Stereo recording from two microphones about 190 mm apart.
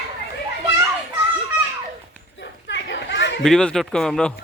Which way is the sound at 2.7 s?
65° left (ahead or behind).